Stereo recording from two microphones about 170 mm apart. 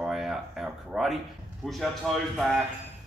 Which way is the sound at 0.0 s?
5° right (ahead or behind).